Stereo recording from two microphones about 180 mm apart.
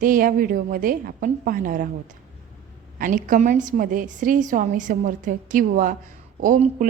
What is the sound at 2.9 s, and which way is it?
A woman's voice, 50° right (ahead or behind).